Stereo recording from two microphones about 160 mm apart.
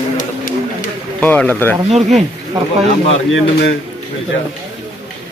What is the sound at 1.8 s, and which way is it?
Speech, 40° right (ahead or behind).